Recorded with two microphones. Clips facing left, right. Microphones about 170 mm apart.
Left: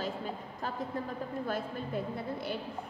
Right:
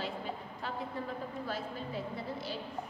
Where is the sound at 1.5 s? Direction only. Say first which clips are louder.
Left 3 dB; 55° left (ahead or behind).